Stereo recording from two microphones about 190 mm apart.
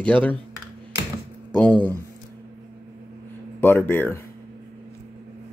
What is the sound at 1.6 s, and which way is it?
Speech, 10° left (ahead or behind).